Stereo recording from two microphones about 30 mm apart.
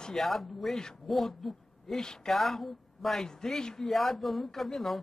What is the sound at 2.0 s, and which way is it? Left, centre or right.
Speech, left.